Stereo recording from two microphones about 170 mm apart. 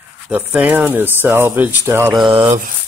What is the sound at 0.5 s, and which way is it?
Speech, 10° right (ahead or behind).